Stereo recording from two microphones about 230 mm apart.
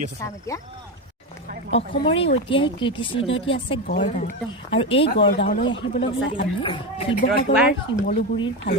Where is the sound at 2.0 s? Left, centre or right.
Left.